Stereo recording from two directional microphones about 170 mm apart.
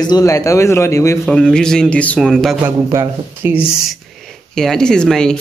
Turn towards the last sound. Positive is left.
turn(degrees=5)  # may be behind; listen again after turning